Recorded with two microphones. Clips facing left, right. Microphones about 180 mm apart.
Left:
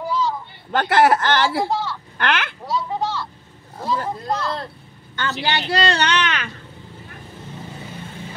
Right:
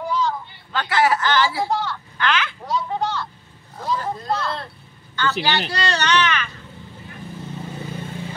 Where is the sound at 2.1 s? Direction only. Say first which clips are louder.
Even; 60° left (ahead or behind).